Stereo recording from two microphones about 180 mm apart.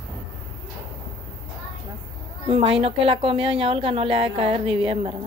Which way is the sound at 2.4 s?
30° right (ahead or behind).